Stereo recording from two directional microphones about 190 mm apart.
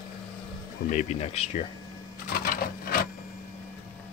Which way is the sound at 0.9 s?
35° left (ahead or behind).